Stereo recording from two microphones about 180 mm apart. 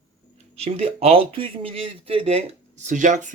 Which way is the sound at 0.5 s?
35° right (ahead or behind).